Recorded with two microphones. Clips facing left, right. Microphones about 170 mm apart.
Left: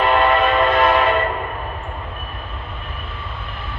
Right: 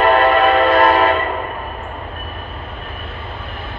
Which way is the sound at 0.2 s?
50° right (ahead or behind).